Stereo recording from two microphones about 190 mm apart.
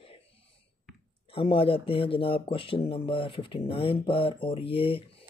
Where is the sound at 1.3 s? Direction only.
30° left (ahead or behind).